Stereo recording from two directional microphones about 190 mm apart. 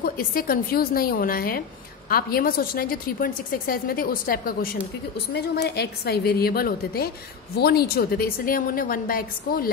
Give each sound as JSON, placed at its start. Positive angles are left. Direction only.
{"t": 0.0, "sound": "a woman's voice", "side_deg": 50}
{"t": 5.3, "sound": "a woman's voice", "side_deg": 60}